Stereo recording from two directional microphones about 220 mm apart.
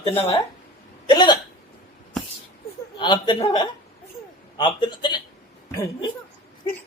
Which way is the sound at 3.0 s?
20° left (ahead or behind).